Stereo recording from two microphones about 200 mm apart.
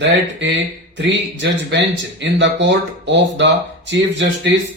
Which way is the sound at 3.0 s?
65° right (ahead or behind).